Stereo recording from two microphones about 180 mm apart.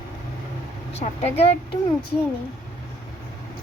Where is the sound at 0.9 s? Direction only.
35° left (ahead or behind).